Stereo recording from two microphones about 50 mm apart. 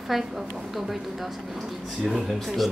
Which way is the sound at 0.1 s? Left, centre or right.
Centre.